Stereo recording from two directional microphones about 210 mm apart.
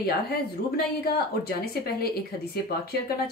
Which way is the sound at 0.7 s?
45° left (ahead or behind).